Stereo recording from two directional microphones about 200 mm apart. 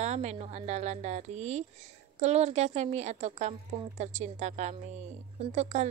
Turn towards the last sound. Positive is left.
turn(degrees=-35)  # may be behind; listen again after turning